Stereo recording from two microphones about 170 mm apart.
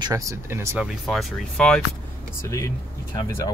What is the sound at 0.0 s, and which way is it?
Speech, 20° right (ahead or behind).